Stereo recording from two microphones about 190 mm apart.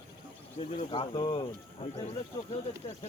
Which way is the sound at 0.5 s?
30° left (ahead or behind).